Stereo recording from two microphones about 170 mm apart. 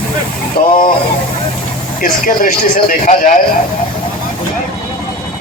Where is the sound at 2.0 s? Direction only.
55° left (ahead or behind).